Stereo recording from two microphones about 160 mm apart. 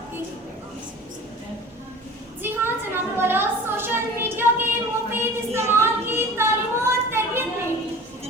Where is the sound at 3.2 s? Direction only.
15° right (ahead or behind).